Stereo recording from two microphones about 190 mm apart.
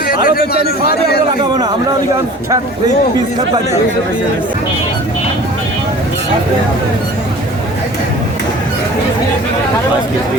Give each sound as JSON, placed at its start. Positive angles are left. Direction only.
{"t": 0.1, "sound": "a man's voice", "side_deg": 50}